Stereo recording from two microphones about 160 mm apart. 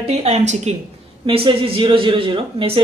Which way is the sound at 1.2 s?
35° right (ahead or behind).